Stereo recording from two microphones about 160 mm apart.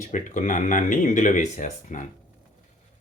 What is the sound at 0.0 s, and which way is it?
Speech, 50° left (ahead or behind).